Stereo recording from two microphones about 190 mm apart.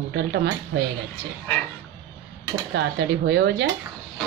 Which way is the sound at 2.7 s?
70° right (ahead or behind).